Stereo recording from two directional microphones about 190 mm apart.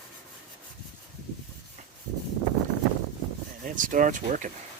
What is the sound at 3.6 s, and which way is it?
Speech, 45° right (ahead or behind).